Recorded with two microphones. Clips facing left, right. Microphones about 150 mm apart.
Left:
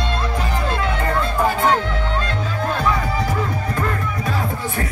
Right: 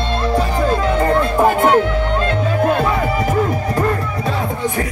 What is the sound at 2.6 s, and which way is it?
Music, 55° right (ahead or behind).